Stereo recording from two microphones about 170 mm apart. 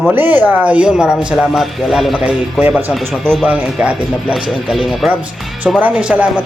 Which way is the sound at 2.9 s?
Centre (ahead or behind).